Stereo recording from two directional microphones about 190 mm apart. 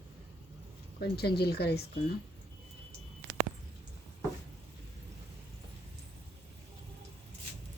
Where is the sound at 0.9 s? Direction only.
55° left (ahead or behind).